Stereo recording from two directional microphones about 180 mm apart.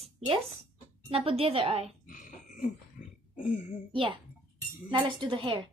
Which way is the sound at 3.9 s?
30° right (ahead or behind).